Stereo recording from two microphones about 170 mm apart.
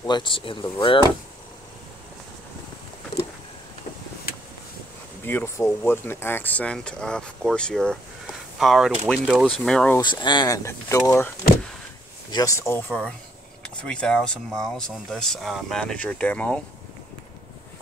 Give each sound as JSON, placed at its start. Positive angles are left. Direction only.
{"t": 0.0, "sound": "speech", "side_deg": 25}
{"t": 5.2, "sound": "speech", "side_deg": 15}
{"t": 9.9, "sound": "speech", "side_deg": 25}
{"t": 12.3, "sound": "speech", "side_deg": 20}